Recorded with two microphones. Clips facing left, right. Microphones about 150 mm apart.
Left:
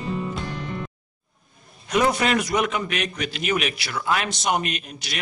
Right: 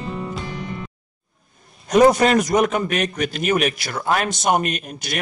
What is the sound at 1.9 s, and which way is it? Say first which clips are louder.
A man's voice: right 7 dB; 40° right (ahead or behind).